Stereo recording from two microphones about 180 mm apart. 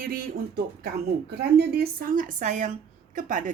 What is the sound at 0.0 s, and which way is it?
Speech, 55° right (ahead or behind).